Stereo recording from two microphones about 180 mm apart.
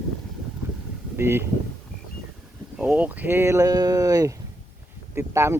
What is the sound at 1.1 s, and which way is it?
Speech, 15° right (ahead or behind).